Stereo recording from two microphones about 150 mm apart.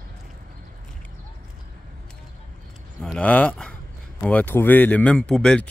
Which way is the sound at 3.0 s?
5° left (ahead or behind).